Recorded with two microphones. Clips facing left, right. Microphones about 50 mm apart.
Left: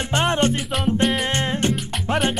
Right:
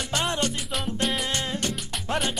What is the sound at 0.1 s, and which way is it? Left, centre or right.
Music, left.